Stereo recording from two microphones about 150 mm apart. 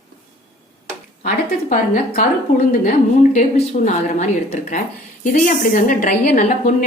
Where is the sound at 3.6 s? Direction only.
50° left (ahead or behind).